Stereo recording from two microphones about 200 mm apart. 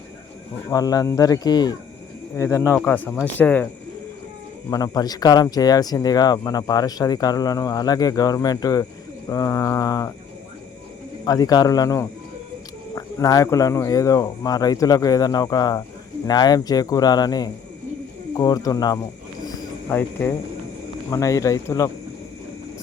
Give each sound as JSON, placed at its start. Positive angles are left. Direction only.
{"t": 0.7, "sound": "speech", "side_deg": 20}
{"t": 4.7, "sound": "speech", "side_deg": 20}
{"t": 11.3, "sound": "speech", "side_deg": 20}
{"t": 19.5, "sound": "cricket", "side_deg": 15}
{"t": 21.1, "sound": "speech", "side_deg": 15}